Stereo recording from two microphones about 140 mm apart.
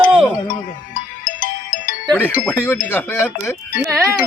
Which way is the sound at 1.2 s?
80° left.